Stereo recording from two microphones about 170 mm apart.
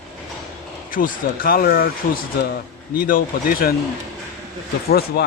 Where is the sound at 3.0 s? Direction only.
55° left (ahead or behind).